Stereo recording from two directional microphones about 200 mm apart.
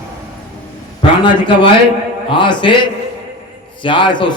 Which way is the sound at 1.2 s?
25° left (ahead or behind).